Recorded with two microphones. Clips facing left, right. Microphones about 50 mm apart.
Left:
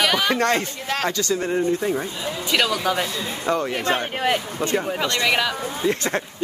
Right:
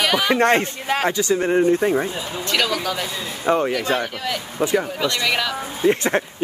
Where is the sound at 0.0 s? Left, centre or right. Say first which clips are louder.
Right 1 dB; centre.